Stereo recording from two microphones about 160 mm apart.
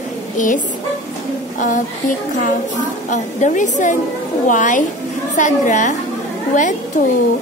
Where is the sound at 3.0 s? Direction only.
50° left (ahead or behind).